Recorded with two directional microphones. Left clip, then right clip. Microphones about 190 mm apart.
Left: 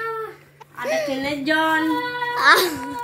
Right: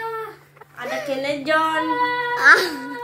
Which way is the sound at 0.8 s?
15° left (ahead or behind).